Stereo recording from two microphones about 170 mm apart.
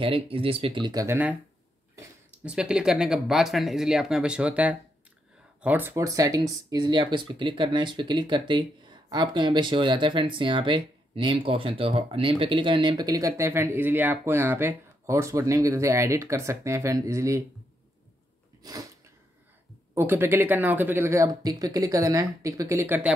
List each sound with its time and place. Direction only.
0.0 s speech: 35° right (ahead or behind)
1.0 s speech: 10° right (ahead or behind)
2.4 s speech: 5° right (ahead or behind)
18.6 s sneeze: 20° right (ahead or behind)
19.9 s speech: 15° right (ahead or behind)